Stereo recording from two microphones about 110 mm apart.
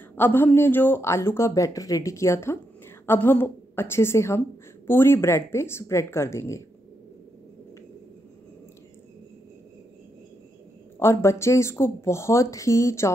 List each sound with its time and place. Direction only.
0.1 s a woman's voice: 20° left (ahead or behind)
11.0 s a woman's voice: 25° left (ahead or behind)